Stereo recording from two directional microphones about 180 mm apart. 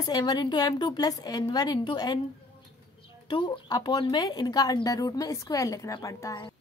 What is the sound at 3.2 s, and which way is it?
A woman's voice, 25° left (ahead or behind).